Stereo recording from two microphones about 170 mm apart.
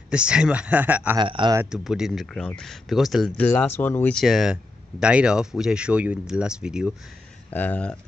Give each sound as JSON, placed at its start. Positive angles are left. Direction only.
{"t": 0.1, "sound": "speech", "side_deg": -5}
{"t": 1.1, "sound": "speech", "side_deg": -30}
{"t": 1.6, "sound": "speech", "side_deg": -5}
{"t": 7.5, "sound": "speech", "side_deg": 10}